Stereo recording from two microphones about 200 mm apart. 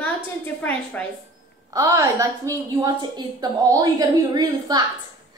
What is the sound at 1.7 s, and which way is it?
A woman's voice, 15° right (ahead or behind).